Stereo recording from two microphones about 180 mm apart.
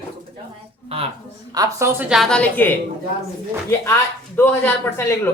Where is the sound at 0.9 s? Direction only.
35° right (ahead or behind).